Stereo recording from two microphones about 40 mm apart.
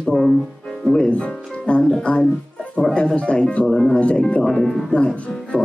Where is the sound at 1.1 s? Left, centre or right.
Left.